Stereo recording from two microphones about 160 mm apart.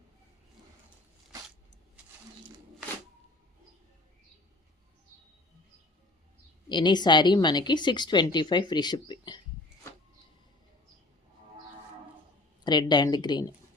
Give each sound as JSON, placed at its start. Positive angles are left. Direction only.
{"t": 6.7, "sound": "a woman's voice", "side_deg": 30}
{"t": 12.6, "sound": "a woman's voice", "side_deg": 25}